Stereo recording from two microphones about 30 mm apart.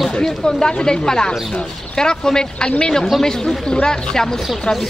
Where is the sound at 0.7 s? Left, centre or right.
Left.